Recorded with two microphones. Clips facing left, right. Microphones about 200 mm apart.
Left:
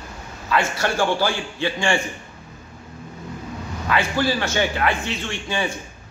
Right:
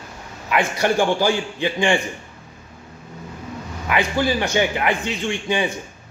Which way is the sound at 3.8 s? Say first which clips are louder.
Right 1 dB; 15° right (ahead or behind).